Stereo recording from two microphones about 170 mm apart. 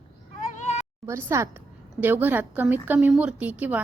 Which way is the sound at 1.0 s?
15° right (ahead or behind).